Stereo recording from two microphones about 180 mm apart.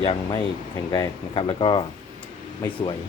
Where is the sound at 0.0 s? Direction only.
30° left (ahead or behind).